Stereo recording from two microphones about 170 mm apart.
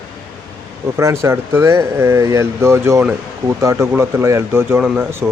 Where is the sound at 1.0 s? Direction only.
15° right (ahead or behind).